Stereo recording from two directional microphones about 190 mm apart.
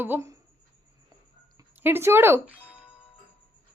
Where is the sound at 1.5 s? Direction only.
10° right (ahead or behind).